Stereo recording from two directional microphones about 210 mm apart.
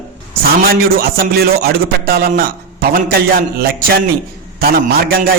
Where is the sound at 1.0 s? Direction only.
45° right (ahead or behind).